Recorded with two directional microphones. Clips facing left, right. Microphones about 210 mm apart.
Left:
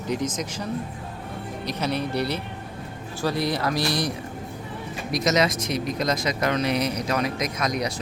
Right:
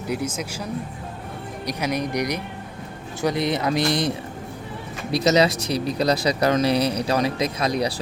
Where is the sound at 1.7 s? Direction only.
10° right (ahead or behind).